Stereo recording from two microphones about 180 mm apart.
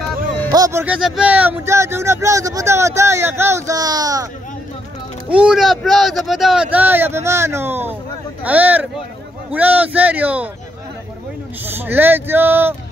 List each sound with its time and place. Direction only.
0.5 s speech: 20° right (ahead or behind)
0.9 s speech: 5° right (ahead or behind); by 4.3 s 20° right (ahead or behind)
5.3 s speech: 5° right (ahead or behind)
11.6 s speech: 10° right (ahead or behind)